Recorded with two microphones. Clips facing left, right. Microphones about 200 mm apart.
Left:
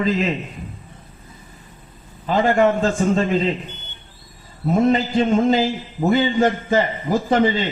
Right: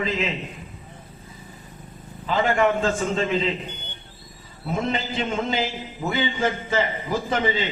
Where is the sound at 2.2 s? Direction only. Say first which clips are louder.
Left 4 dB; 40° left (ahead or behind).